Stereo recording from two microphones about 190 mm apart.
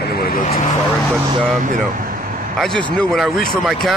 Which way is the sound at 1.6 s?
45° right (ahead or behind).